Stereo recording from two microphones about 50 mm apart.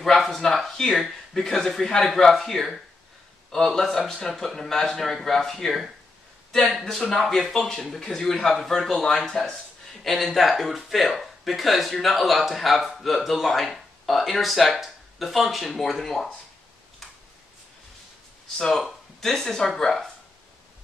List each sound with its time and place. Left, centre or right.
0.0 s speech: centre
10.0 s speech: centre
18.6 s speech: centre